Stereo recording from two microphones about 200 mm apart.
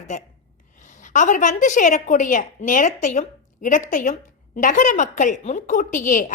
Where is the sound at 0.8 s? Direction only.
40° left (ahead or behind).